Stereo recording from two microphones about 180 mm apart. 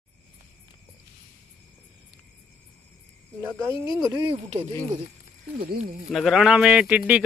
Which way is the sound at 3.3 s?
15° right (ahead or behind).